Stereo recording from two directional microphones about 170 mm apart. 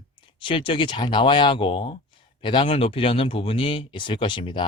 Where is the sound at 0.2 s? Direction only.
30° left (ahead or behind).